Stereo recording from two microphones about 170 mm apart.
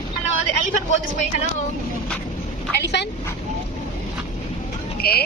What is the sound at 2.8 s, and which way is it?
Speech, 85° left.